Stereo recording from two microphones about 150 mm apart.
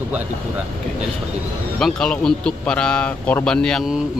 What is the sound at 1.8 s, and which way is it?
A man's voice, 5° left (ahead or behind).